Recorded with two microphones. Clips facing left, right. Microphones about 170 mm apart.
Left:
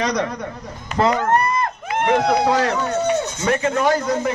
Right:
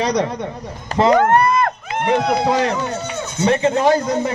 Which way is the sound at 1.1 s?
60° right (ahead or behind).